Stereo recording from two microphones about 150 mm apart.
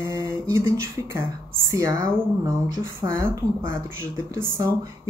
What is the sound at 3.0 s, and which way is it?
Speech, 15° right (ahead or behind).